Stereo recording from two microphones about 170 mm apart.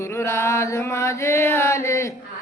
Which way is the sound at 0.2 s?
15° left (ahead or behind).